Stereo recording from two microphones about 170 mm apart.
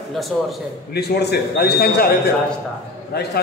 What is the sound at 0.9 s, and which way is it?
A man's voice, 75° left (ahead or behind).